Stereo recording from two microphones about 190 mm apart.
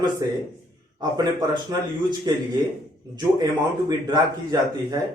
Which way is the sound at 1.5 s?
20° right (ahead or behind).